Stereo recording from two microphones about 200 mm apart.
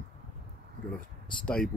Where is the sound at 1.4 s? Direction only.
5° left (ahead or behind).